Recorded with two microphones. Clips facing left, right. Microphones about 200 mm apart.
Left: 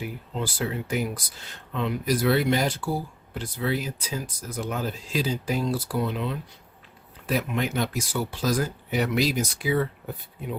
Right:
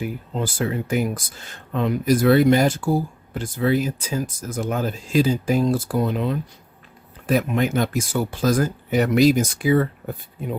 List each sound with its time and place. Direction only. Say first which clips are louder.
0.0 s speech: right 5 dB; 50° right (ahead or behind)